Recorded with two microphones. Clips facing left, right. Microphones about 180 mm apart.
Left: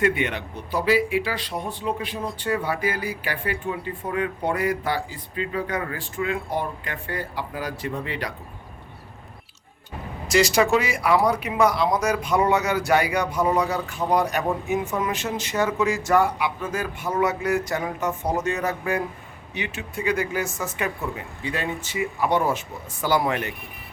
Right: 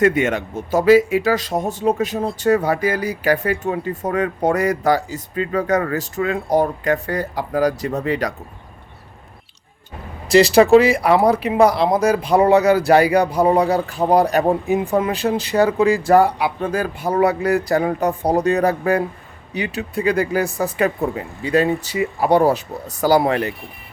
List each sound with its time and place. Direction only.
0.0 s speech: 45° right (ahead or behind)
10.2 s speech: 35° right (ahead or behind)